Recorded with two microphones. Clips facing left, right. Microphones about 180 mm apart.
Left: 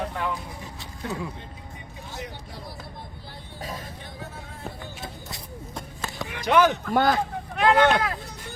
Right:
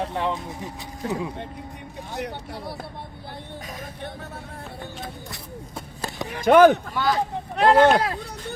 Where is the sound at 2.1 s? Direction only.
65° right (ahead or behind).